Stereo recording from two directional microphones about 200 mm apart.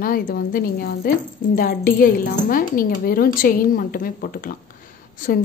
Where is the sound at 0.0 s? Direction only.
45° left (ahead or behind).